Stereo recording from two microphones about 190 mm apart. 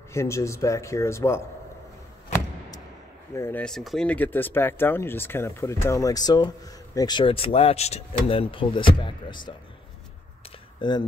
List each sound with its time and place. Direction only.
0.1 s speech: 15° left (ahead or behind)
3.3 s speech: 10° left (ahead or behind)
10.8 s speech: 25° left (ahead or behind)